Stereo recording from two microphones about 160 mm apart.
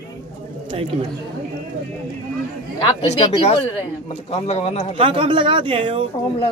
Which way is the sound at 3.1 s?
40° left (ahead or behind).